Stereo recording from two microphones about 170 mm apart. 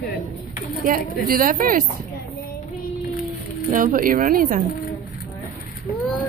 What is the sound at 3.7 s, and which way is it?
Speech, 50° right (ahead or behind).